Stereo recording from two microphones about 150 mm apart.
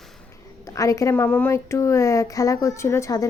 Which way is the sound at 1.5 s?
20° left (ahead or behind).